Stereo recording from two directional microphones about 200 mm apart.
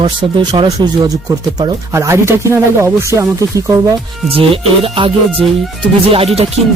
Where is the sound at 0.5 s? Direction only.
20° right (ahead or behind).